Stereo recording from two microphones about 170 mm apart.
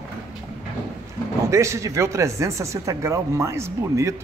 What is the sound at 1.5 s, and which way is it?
Speech, 15° right (ahead or behind).